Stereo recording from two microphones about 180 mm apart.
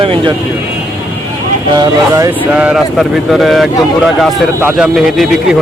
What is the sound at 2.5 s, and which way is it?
Speech, 5° right (ahead or behind).